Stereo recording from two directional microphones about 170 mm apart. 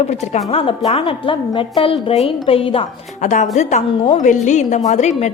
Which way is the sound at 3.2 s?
45° left (ahead or behind).